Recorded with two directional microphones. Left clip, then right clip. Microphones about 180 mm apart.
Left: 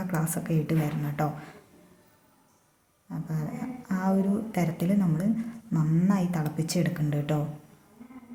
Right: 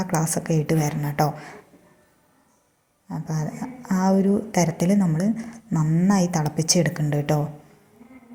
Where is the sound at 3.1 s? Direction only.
30° right (ahead or behind).